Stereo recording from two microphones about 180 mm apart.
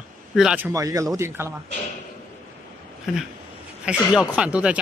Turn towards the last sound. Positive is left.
turn(degrees=-5)  # may be behind; listen again after turning